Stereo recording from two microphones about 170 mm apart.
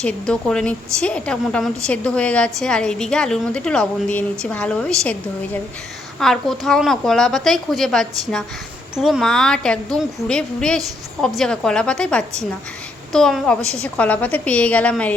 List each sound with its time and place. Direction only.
0.0 s a woman's voice: 5° left (ahead or behind)